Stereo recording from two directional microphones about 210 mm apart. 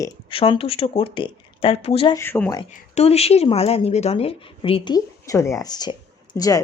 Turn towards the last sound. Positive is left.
turn(degrees=15)  # may be behind; listen again after turning